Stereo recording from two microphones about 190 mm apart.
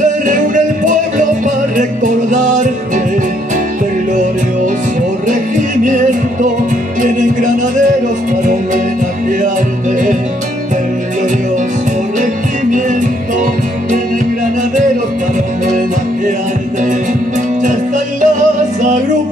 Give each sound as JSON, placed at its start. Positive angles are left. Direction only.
{"t": 0.8, "sound": "music", "side_deg": -40}
{"t": 17.6, "sound": "music", "side_deg": -40}